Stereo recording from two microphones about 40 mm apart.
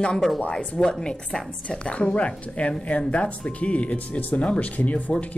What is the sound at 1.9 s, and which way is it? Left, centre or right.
A woman's voice, left.